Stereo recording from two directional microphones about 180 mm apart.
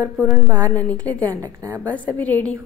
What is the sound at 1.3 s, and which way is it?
Speech, 20° right (ahead or behind).